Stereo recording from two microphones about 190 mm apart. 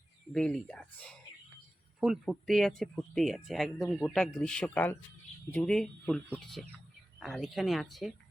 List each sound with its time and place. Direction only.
0.3 s speech: 5° left (ahead or behind)